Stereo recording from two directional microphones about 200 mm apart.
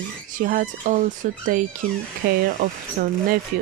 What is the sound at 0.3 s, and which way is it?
A woman's voice, 45° right (ahead or behind).